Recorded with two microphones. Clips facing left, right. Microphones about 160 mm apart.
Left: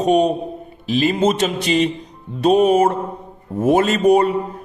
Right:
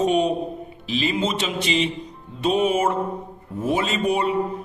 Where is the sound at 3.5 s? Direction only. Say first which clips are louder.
Left 7 dB; 45° left (ahead or behind).